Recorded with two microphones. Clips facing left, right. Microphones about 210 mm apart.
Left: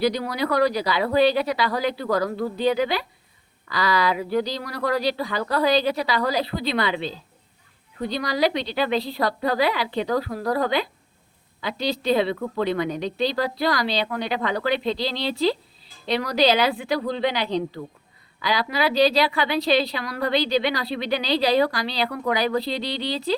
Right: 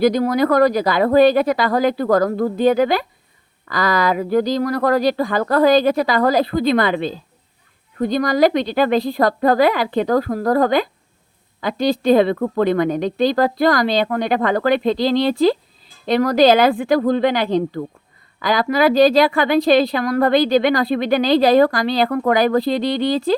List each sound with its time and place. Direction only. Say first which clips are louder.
0.0 s a woman's voice: right 8 dB; 45° right (ahead or behind)